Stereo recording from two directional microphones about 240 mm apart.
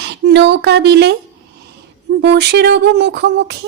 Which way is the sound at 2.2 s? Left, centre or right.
Right.